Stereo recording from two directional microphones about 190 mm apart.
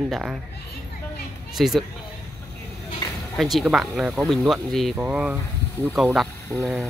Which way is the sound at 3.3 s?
Centre (ahead or behind).